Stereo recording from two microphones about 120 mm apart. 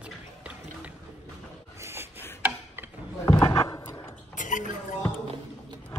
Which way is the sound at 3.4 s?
30° left (ahead or behind).